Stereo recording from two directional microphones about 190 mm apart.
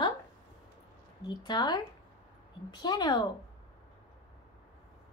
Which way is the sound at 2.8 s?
20° left (ahead or behind).